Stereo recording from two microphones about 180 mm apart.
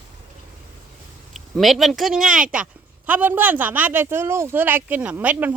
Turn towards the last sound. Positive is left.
turn(degrees=-10)  # may be behind; listen again after turning